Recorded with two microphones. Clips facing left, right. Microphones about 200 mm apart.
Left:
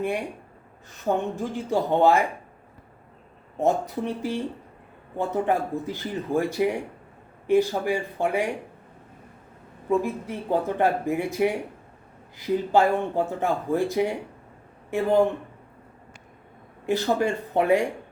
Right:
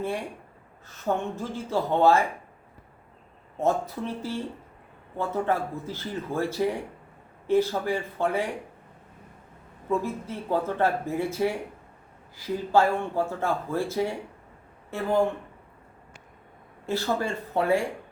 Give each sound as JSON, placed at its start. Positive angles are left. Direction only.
{"t": 0.0, "sound": "speech", "side_deg": 15}
{"t": 3.6, "sound": "speech", "side_deg": 15}
{"t": 10.0, "sound": "speech", "side_deg": 15}
{"t": 16.8, "sound": "speech", "side_deg": 15}